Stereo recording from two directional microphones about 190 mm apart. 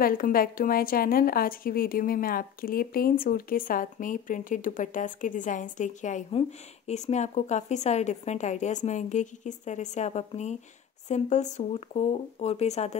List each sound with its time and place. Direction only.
0.0 s a woman's voice: 50° left (ahead or behind)